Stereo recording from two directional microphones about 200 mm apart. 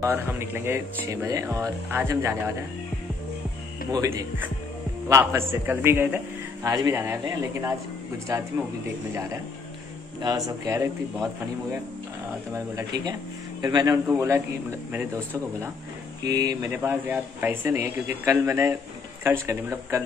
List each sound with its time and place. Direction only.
0.0 s a man's voice: 10° right (ahead or behind)
3.9 s a man's voice: 15° right (ahead or behind)
10.6 s a man's voice: 15° right (ahead or behind)
12.5 s a man's voice: 15° right (ahead or behind)
16.2 s a man's voice: 20° right (ahead or behind)